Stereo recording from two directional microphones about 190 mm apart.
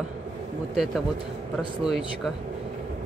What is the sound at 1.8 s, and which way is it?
Speech, centre (ahead or behind).